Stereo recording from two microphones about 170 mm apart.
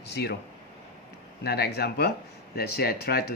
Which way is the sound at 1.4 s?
70° left (ahead or behind).